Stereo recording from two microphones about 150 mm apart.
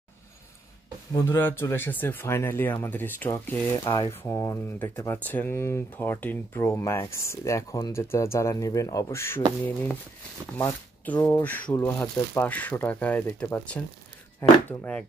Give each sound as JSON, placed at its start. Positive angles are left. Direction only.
{"t": 1.1, "sound": "speech", "side_deg": 15}
{"t": 3.8, "sound": "speech", "side_deg": 25}
{"t": 10.6, "sound": "speech", "side_deg": 15}